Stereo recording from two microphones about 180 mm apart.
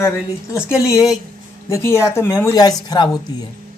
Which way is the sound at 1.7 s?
15° left (ahead or behind).